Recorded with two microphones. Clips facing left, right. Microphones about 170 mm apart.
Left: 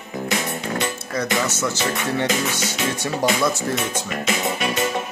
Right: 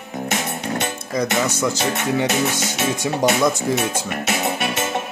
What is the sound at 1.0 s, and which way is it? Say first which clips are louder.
Music: right 2 dB; 15° right (ahead or behind).